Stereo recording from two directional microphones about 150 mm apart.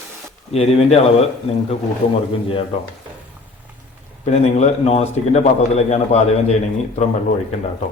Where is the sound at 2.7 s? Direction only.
40° left (ahead or behind).